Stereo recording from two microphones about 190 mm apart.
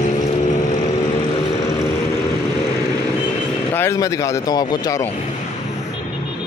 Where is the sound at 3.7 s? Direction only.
15° left (ahead or behind).